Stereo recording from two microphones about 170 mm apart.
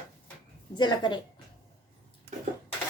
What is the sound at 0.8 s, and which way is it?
Speech, 25° left (ahead or behind).